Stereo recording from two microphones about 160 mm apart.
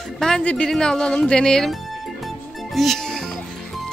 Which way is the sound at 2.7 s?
Centre (ahead or behind).